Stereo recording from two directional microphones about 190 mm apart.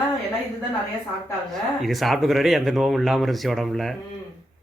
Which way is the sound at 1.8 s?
Centre (ahead or behind).